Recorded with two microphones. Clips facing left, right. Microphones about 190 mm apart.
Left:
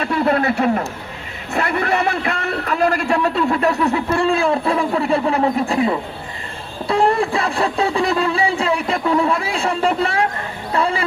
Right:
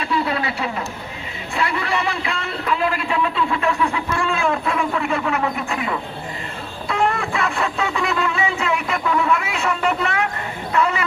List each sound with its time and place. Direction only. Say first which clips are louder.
0.0 s a man's voice: left 5 dB; 50° left (ahead or behind); by 11.0 s 30° left (ahead or behind)